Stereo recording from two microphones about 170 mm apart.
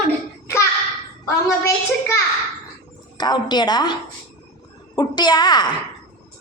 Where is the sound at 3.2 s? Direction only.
25° left (ahead or behind).